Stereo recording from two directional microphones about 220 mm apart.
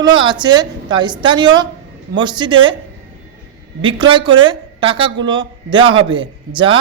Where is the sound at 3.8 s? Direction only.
20° right (ahead or behind).